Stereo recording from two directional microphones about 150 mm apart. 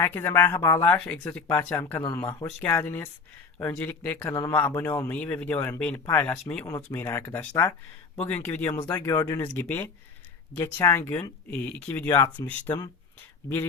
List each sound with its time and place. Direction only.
0.0 s a man's voice: 15° left (ahead or behind)